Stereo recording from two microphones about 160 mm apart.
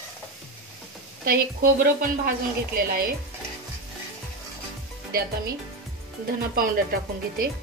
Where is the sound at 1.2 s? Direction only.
65° right (ahead or behind).